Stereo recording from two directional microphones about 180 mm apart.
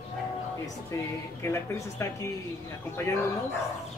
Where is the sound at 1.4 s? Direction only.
15° left (ahead or behind).